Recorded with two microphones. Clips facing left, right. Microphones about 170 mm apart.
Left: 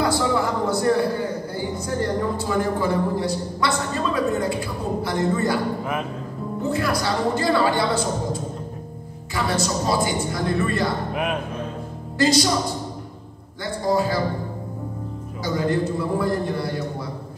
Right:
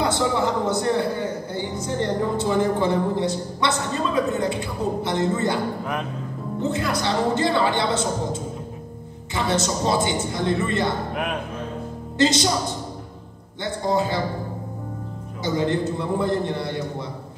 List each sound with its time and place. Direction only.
0.0 s a man's voice: 20° right (ahead or behind)
6.6 s a man's voice: 20° right (ahead or behind)
12.2 s a man's voice: 25° right (ahead or behind)
13.8 s a man's voice: 20° right (ahead or behind)
15.4 s a man's voice: 25° right (ahead or behind)